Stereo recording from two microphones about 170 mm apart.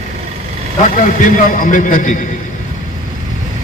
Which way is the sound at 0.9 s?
50° left (ahead or behind).